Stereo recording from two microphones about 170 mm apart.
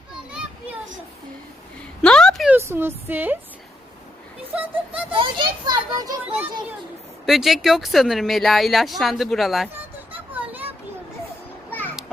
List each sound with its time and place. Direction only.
2.0 s a sound: 5° left (ahead or behind)
2.6 s speech: 15° right (ahead or behind)
4.5 s a sound: 10° right (ahead or behind)
5.1 s a child's voice: 30° right (ahead or behind)
7.3 s speech: centre (ahead or behind)
10.1 s children playing: 10° right (ahead or behind)
11.7 s music: 10° left (ahead or behind)